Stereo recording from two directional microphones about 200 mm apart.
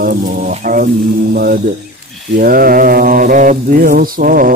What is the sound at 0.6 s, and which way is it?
Music, 40° right (ahead or behind).